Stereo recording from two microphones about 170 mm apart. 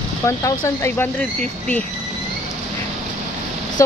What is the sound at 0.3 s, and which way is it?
Speech, 15° left (ahead or behind).